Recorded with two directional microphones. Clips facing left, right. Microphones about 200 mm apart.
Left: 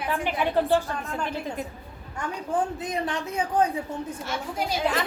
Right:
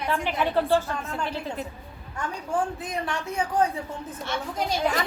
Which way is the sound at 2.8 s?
20° left (ahead or behind).